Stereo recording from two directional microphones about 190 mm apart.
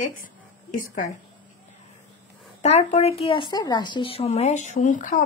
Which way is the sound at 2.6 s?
35° left (ahead or behind).